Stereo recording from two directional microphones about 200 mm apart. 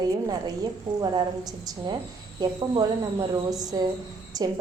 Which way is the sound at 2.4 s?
20° right (ahead or behind).